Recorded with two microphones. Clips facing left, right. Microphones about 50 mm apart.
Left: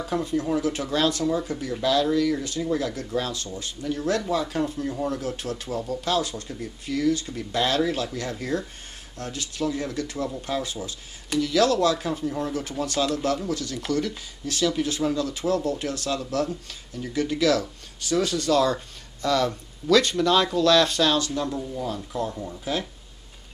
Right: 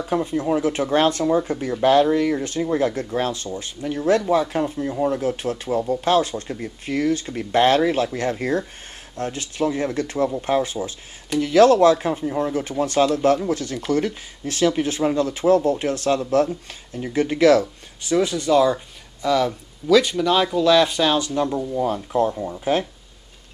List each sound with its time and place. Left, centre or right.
0.1 s speech: right